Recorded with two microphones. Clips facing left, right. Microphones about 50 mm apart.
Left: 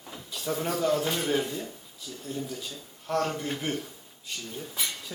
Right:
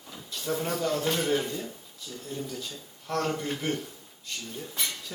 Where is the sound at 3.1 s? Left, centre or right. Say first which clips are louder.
Left 1 dB; centre.